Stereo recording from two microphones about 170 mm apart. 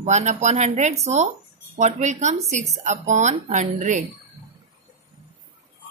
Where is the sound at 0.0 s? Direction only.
45° right (ahead or behind).